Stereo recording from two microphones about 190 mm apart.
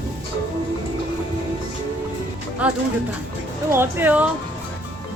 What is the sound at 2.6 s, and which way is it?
Speech, 5° right (ahead or behind).